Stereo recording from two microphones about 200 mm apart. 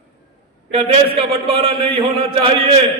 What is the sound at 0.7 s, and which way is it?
A man's voice, 25° right (ahead or behind).